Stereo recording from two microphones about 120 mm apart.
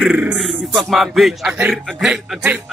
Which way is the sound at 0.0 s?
5° right (ahead or behind).